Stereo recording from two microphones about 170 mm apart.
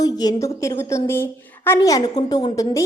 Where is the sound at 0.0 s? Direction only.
20° left (ahead or behind).